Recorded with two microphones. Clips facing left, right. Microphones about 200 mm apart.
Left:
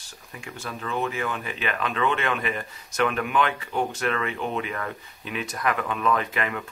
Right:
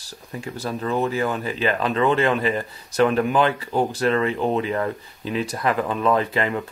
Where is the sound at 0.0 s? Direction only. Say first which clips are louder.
Right 8 dB; 35° right (ahead or behind).